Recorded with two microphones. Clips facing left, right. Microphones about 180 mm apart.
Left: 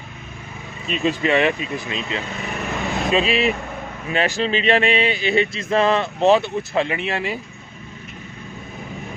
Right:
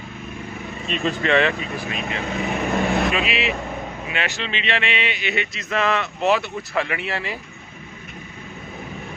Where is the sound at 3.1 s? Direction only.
35° left (ahead or behind); by 7.3 s 20° left (ahead or behind).